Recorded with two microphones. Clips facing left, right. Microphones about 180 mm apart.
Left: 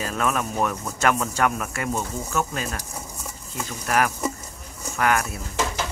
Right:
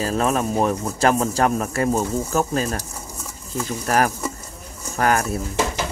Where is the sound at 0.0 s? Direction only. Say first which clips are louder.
Right 5 dB; 35° right (ahead or behind).